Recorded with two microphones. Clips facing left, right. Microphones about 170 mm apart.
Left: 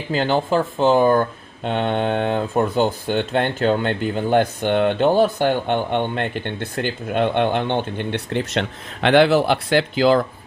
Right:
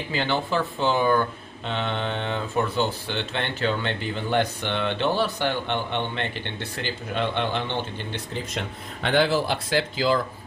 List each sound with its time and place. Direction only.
0.1 s speech: 45° left (ahead or behind); by 10.2 s 60° left (ahead or behind)